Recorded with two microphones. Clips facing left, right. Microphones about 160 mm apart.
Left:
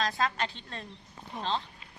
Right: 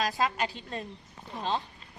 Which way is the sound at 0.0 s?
10° right (ahead or behind).